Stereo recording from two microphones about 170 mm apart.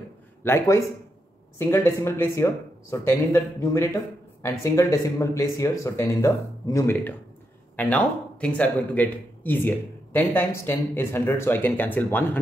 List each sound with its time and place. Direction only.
0.4 s speech: 15° left (ahead or behind)